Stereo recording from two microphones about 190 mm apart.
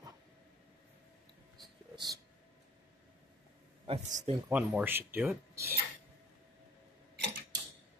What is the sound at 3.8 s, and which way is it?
Speech, 35° right (ahead or behind).